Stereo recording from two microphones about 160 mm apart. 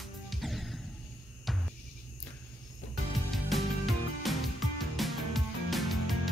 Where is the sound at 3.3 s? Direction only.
Centre (ahead or behind).